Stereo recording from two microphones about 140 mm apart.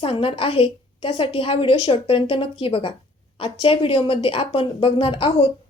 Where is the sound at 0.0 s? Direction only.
40° left (ahead or behind).